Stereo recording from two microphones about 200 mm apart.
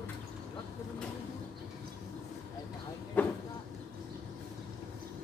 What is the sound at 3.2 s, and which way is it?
Vehicle, 10° left (ahead or behind).